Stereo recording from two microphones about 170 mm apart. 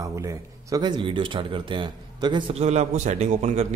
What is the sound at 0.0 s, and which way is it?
A man's voice, 20° right (ahead or behind).